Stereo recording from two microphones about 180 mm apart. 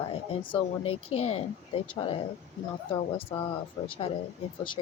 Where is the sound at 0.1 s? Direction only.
30° left (ahead or behind).